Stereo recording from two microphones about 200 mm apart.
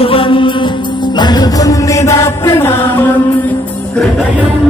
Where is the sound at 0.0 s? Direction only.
25° left (ahead or behind).